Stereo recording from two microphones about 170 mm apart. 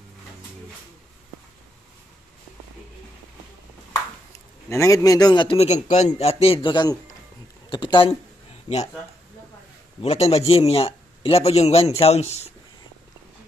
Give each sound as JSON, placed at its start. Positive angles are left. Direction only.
{"t": 4.6, "sound": "a man's voice", "side_deg": 15}
{"t": 10.0, "sound": "a man's voice", "side_deg": 40}